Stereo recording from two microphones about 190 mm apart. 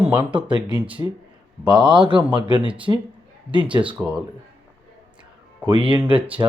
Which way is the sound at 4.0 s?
5° right (ahead or behind).